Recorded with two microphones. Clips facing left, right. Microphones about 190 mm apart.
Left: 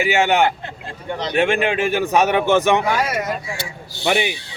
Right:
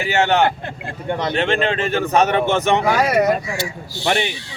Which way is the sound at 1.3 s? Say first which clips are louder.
Left 3 dB; 10° left (ahead or behind).